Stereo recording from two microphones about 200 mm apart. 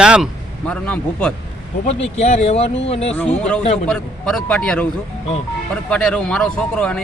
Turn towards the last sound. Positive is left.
turn(degrees=5)  # may be behind; listen again after turning